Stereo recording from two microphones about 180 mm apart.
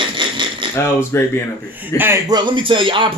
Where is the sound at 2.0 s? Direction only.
15° right (ahead or behind).